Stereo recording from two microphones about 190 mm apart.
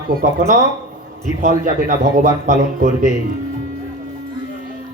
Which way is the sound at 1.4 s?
45° right (ahead or behind).